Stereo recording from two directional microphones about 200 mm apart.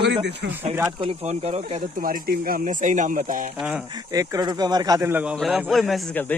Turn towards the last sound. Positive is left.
turn(degrees=10)  # may be behind; listen again after turning